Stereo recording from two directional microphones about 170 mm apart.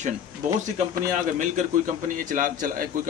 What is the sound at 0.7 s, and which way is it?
Speech, 45° right (ahead or behind).